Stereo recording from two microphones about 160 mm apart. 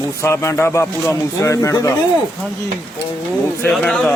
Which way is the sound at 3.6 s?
5° left (ahead or behind).